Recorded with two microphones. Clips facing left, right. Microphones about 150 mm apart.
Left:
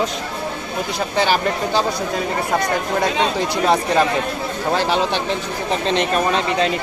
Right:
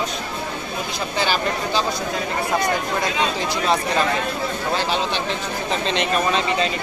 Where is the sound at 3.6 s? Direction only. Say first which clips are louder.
Left 4 dB; 60° left (ahead or behind).